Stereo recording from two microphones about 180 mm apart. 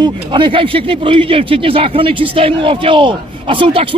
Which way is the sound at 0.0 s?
25° right (ahead or behind).